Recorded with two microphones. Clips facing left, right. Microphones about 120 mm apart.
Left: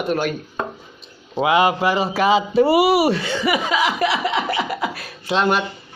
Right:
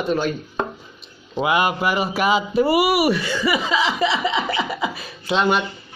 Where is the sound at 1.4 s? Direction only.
25° left (ahead or behind).